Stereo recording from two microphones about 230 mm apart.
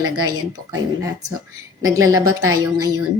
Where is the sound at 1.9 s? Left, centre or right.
Centre.